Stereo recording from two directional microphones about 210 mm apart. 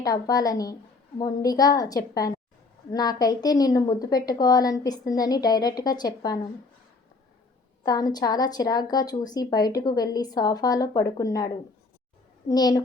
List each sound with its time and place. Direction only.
0.0 s a woman's voice: 15° left (ahead or behind)
7.9 s a woman's voice: 20° left (ahead or behind)